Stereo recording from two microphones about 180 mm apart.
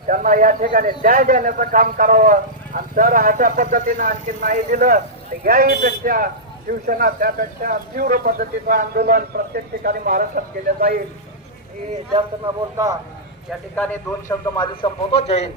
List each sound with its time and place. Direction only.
0.1 s a man's voice: 50° right (ahead or behind)
12.7 s speech: 20° right (ahead or behind)
13.7 s a man's voice: 10° left (ahead or behind); by 15.4 s 35° left (ahead or behind)